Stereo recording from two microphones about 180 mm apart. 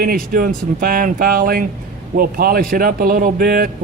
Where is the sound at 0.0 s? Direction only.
50° right (ahead or behind).